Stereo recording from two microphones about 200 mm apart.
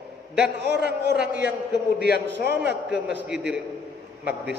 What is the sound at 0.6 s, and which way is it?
A man's voice, 55° right (ahead or behind).